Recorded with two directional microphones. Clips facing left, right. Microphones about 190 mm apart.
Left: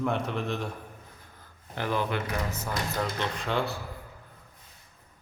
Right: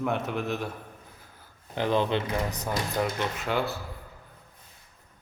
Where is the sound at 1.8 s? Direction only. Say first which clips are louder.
Right 4 dB; 20° right (ahead or behind); by 3.7 s 5° right (ahead or behind).